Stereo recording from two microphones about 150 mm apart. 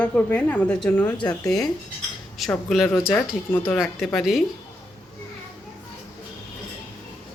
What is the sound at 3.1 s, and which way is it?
Speech, 15° left (ahead or behind).